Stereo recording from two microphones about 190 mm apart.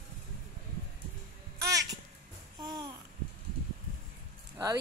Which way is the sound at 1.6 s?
20° right (ahead or behind).